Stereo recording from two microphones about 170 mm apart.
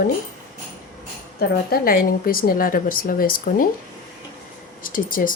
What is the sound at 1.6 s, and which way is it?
A woman's voice, 60° left (ahead or behind).